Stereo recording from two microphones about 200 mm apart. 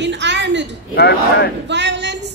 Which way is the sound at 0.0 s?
60° right (ahead or behind).